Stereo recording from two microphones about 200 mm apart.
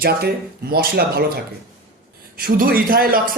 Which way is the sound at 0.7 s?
50° right (ahead or behind).